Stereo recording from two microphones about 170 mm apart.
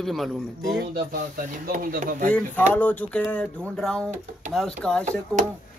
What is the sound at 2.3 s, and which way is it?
Speech, 10° left (ahead or behind).